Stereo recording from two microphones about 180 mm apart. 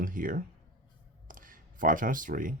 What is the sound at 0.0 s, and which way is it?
Speech, 50° right (ahead or behind).